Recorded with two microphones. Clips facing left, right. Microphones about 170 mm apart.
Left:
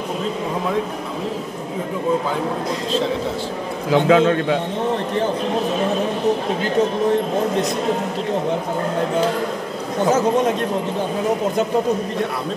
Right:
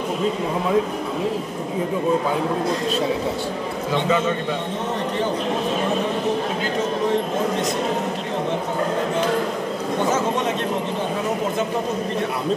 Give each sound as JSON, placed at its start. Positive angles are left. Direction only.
{"t": 3.9, "sound": "a man's voice", "side_deg": 65}